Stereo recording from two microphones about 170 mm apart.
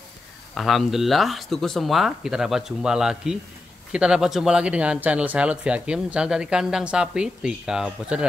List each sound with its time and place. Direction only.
0.6 s speech: centre (ahead or behind)